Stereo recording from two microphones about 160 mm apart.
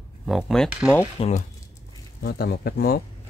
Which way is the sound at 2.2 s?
80° left.